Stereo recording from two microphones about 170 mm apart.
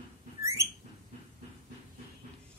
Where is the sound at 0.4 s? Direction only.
20° right (ahead or behind).